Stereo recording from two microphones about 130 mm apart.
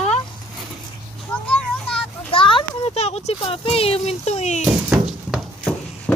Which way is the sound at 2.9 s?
55° left (ahead or behind).